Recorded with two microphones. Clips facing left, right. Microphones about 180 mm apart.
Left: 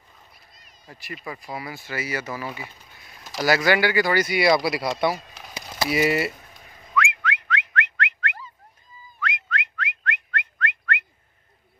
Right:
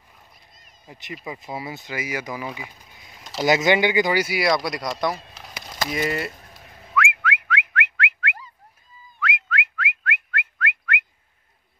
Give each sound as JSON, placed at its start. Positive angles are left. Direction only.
{"t": 0.8, "sound": "speech", "side_deg": -20}
{"t": 3.3, "sound": "a sound", "side_deg": -20}
{"t": 9.2, "sound": "whistling", "side_deg": -5}